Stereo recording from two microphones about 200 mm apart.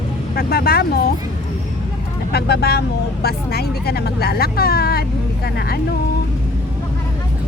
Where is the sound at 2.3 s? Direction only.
55° left (ahead or behind).